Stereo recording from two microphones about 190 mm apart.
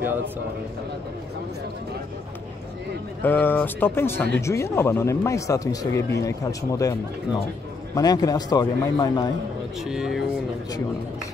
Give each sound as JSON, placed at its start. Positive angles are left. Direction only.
{"t": 3.2, "sound": "a man's voice", "side_deg": 10}
{"t": 9.8, "sound": "speech", "side_deg": -5}